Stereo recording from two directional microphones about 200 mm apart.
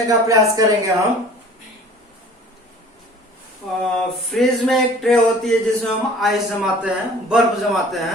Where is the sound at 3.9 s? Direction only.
Centre (ahead or behind).